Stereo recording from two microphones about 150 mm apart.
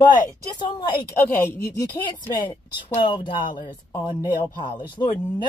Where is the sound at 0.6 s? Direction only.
30° left (ahead or behind).